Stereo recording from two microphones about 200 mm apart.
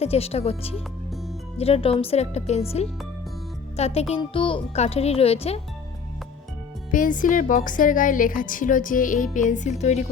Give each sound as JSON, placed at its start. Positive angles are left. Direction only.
{"t": 0.0, "sound": "a woman's voice", "side_deg": 30}
{"t": 6.9, "sound": "a woman's voice", "side_deg": 40}